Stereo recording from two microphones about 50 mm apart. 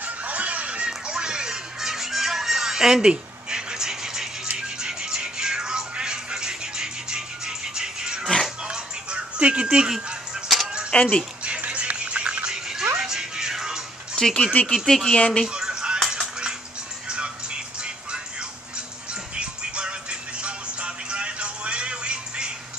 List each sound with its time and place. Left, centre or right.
0.0 s music: right
10.9 s speech: left
11.4 s music: right
14.2 s speech: centre
14.6 s speech: left
14.9 s speech: centre
15.1 s speech: centre
15.4 s a sound: centre
17.1 s music: centre